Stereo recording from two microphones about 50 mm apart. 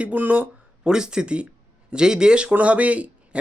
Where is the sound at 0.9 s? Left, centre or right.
Centre.